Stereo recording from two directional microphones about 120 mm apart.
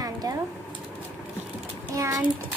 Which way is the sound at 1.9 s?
25° right (ahead or behind).